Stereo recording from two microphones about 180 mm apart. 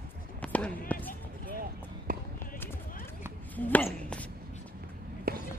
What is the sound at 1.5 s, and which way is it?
Basketball bounce, 55° right (ahead or behind).